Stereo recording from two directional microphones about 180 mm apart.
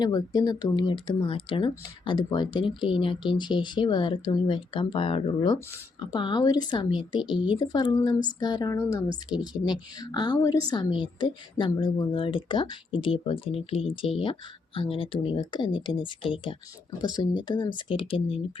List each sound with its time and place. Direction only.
0.0 s speech: 20° left (ahead or behind)